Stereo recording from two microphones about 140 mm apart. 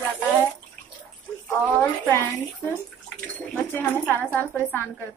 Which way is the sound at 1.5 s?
10° left (ahead or behind).